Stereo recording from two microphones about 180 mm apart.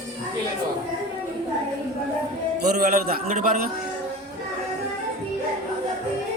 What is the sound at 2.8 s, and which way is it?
Speech, 55° right (ahead or behind).